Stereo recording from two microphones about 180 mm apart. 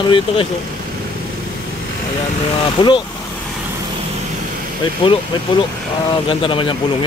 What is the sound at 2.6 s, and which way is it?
Speech, 25° left (ahead or behind).